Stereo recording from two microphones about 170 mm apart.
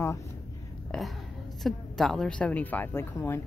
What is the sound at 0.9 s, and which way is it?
A woman's voice, 5° left (ahead or behind).